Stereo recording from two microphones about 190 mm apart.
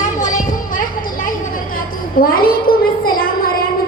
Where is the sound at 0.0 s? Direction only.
40° left (ahead or behind).